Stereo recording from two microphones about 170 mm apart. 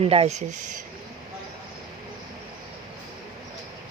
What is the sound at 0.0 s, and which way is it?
Speech, 35° right (ahead or behind).